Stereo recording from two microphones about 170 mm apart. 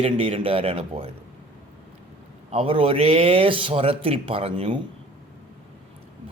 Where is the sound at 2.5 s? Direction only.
30° right (ahead or behind).